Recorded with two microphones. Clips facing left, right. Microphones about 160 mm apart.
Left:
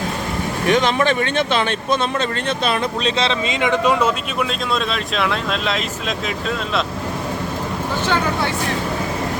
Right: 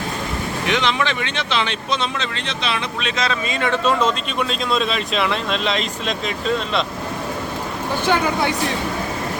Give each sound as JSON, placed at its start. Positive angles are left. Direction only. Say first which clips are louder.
{"t": 0.7, "sound": "speech", "louder": "left 5 dB", "side_deg": 45}
{"t": 3.0, "sound": "speech", "louder": "left 3 dB", "side_deg": 30}